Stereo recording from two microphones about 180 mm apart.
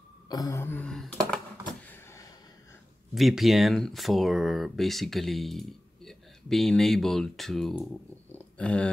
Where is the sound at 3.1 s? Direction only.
Centre (ahead or behind).